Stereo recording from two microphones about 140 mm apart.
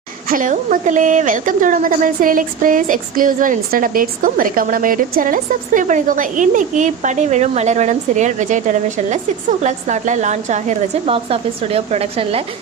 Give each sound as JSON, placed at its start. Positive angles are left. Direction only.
{"t": 0.3, "sound": "a woman's voice", "side_deg": -75}